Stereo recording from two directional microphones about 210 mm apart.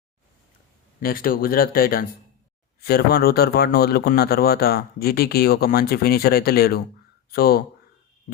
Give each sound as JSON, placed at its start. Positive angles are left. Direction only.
{"t": 0.9, "sound": "speech", "side_deg": 45}